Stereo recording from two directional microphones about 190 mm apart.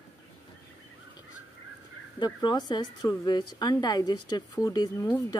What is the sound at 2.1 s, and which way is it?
Speech, 25° left (ahead or behind).